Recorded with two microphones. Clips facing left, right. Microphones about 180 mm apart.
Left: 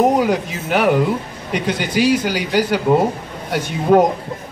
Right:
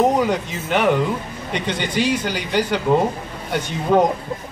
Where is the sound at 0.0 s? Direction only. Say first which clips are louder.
Left 2 dB; 10° left (ahead or behind).